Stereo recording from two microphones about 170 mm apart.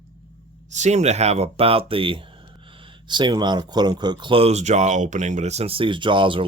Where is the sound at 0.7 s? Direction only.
45° right (ahead or behind).